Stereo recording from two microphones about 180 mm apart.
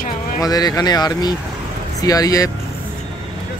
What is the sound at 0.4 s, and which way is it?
Speech, 20° left (ahead or behind).